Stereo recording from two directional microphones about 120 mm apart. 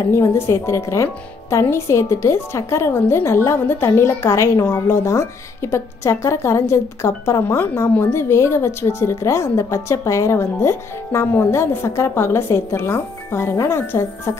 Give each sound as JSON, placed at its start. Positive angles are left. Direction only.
{"t": 0.1, "sound": "speech", "side_deg": 20}